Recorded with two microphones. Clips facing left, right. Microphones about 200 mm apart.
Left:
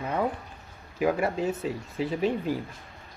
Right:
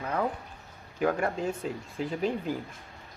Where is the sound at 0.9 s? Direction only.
5° left (ahead or behind).